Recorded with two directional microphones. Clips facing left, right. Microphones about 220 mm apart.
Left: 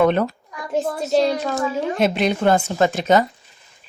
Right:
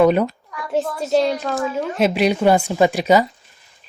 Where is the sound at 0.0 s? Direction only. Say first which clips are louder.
Right 2 dB; 10° right (ahead or behind).